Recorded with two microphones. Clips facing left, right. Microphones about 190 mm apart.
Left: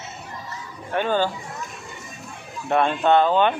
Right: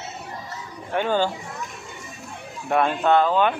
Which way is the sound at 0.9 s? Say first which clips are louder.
Even; 15° right (ahead or behind).